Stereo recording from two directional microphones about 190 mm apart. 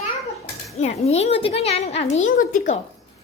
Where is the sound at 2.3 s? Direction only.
45° left (ahead or behind).